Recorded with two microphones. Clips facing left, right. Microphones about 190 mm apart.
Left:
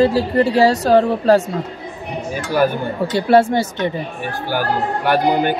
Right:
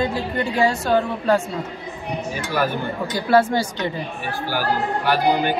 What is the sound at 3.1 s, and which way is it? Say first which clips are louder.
Speech: left 4 dB; 25° left (ahead or behind).